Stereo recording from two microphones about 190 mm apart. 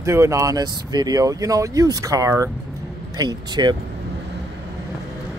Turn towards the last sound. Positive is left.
turn(degrees=-20)  # may be behind; listen again after turning